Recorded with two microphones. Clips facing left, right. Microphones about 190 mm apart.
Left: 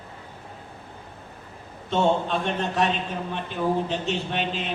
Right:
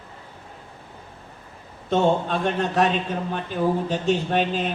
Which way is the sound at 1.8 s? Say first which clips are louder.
Right 2 dB; 45° right (ahead or behind).